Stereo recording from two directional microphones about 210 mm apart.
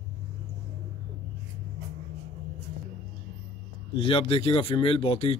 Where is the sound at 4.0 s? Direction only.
25° left (ahead or behind).